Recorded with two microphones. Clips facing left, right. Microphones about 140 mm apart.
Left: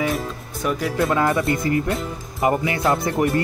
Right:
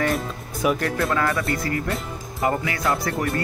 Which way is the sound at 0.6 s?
10° right (ahead or behind).